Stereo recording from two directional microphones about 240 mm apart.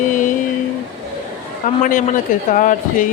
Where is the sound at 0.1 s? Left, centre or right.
Left.